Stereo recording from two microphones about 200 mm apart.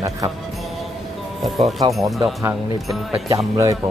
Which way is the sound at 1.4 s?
Centre (ahead or behind).